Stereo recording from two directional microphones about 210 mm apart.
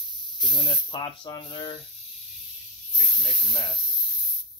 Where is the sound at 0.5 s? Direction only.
25° left (ahead or behind).